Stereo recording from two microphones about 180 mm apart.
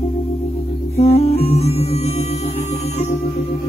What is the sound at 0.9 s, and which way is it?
Music, 35° left (ahead or behind).